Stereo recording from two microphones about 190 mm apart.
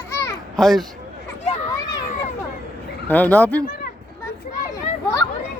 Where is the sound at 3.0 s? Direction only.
10° left (ahead or behind).